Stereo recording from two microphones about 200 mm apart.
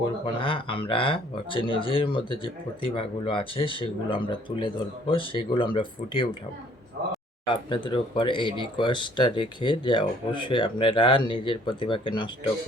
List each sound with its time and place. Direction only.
0.3 s speech: 25° left (ahead or behind)
7.5 s speech: 25° left (ahead or behind)